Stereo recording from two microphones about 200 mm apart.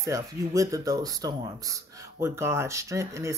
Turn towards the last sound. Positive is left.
turn(degrees=-15)  # may be behind; listen again after turning